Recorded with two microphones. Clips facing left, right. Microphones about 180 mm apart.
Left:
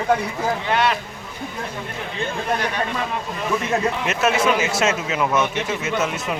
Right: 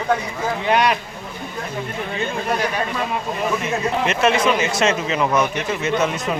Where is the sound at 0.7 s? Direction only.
15° right (ahead or behind).